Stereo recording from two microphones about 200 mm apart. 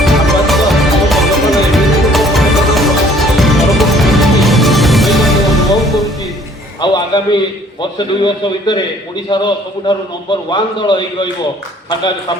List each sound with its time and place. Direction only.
0.0 s music: centre (ahead or behind)
6.8 s a sound: 25° left (ahead or behind)
7.8 s a man's voice: 25° left (ahead or behind)